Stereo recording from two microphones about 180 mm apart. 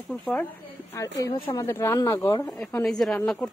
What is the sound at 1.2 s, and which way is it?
A woman's voice, 25° left (ahead or behind).